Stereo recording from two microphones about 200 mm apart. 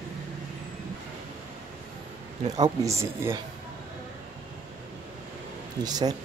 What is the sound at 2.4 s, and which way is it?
A man's voice, 20° right (ahead or behind).